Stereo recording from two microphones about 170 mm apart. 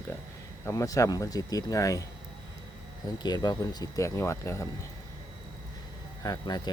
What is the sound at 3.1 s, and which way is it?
Speech, 25° left (ahead or behind).